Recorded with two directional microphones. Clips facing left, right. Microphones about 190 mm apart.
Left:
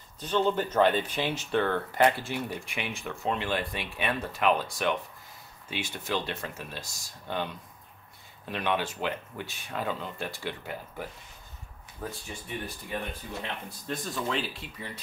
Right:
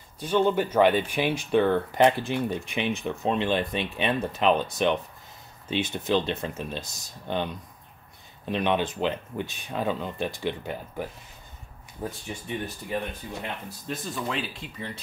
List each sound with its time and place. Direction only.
0.2 s speech: 10° right (ahead or behind)
8.5 s speech: 20° right (ahead or behind)
13.3 s speech: 5° right (ahead or behind)